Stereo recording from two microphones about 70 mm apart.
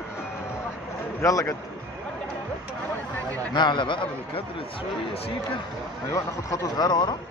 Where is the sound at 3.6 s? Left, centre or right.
Left.